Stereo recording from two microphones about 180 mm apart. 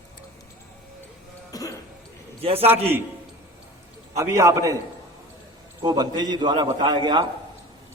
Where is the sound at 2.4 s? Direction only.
35° right (ahead or behind).